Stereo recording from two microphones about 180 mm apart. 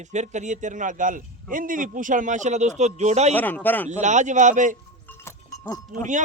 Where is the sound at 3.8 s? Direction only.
40° right (ahead or behind).